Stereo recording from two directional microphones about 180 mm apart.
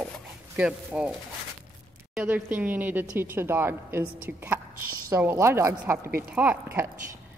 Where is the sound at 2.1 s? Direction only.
10° right (ahead or behind).